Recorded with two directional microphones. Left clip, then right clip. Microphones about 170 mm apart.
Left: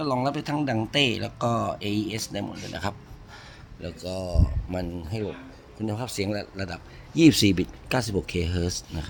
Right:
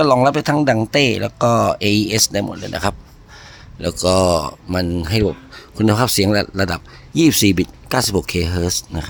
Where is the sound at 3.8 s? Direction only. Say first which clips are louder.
Right 18 dB; 30° right (ahead or behind).